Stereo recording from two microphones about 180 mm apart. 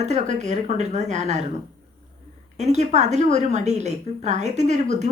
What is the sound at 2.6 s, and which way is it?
Speech, 40° right (ahead or behind).